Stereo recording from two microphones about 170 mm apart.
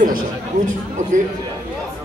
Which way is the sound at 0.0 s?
50° right (ahead or behind).